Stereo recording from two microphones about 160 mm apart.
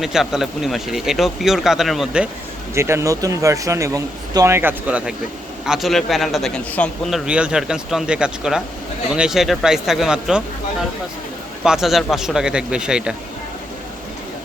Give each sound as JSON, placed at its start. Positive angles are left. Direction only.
{"t": 0.0, "sound": "a man's voice", "side_deg": 0}
{"t": 2.7, "sound": "a man's voice", "side_deg": -15}